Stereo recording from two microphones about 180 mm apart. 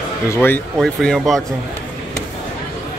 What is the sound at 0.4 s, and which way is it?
Speech, 5° left (ahead or behind).